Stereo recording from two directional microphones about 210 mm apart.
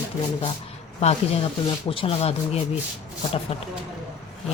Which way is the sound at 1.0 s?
30° left (ahead or behind).